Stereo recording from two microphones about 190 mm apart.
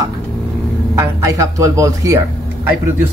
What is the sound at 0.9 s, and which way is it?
Speech, 15° right (ahead or behind).